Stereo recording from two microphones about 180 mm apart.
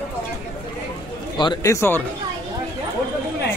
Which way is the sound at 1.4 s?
20° left (ahead or behind).